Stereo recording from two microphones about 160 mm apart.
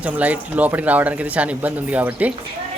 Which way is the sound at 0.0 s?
10° right (ahead or behind).